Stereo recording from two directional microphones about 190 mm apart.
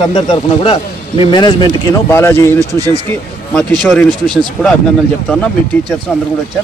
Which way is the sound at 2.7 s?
20° right (ahead or behind).